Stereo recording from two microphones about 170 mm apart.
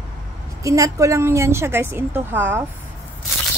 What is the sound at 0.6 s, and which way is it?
A woman's voice, 20° right (ahead or behind).